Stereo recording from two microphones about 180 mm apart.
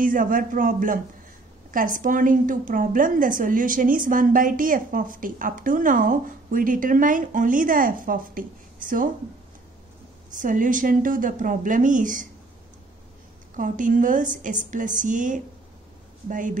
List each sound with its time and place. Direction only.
0.0 s a woman's voice: 50° right (ahead or behind)
10.3 s a woman's voice: 45° right (ahead or behind)
13.6 s a woman's voice: 45° right (ahead or behind)